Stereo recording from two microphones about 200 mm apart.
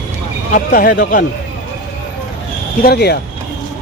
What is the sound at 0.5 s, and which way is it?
Speech, 45° left (ahead or behind).